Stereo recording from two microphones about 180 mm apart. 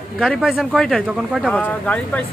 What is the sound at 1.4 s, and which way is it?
Speech, 5° left (ahead or behind).